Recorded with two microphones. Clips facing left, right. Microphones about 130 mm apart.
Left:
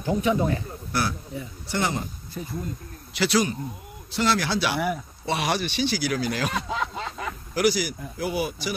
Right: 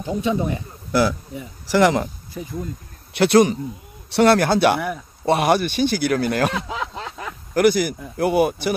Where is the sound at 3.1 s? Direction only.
55° right (ahead or behind).